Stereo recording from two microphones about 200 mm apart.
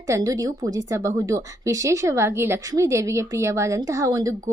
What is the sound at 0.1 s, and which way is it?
A woman's voice, 15° right (ahead or behind).